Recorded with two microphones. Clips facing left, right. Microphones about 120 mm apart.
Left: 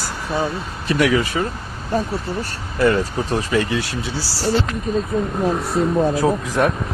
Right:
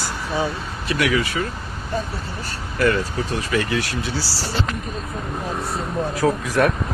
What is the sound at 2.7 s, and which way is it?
Speech, 30° left (ahead or behind).